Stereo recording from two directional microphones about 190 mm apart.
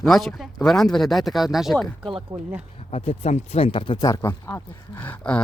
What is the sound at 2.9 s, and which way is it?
Speech, 35° left (ahead or behind).